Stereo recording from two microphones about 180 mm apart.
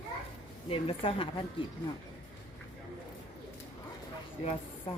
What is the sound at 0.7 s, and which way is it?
Speech, 30° left (ahead or behind).